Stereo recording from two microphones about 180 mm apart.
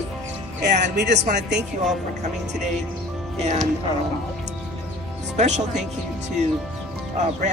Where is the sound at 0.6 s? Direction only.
70° right (ahead or behind).